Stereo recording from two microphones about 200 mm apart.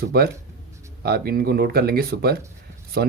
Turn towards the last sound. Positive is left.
turn(degrees=-55)  # may be behind; listen again after turning